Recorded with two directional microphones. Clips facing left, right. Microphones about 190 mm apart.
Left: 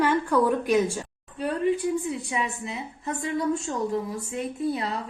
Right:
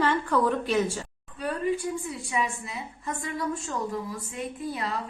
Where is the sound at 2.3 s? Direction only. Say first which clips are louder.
Even; 25° left (ahead or behind).